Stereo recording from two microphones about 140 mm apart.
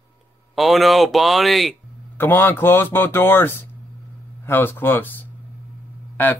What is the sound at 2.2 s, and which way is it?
Speech, 15° left (ahead or behind).